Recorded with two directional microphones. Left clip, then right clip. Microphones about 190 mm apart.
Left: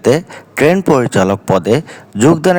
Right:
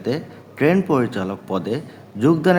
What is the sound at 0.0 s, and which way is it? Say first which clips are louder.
Speech: left 13 dB; 60° left (ahead or behind).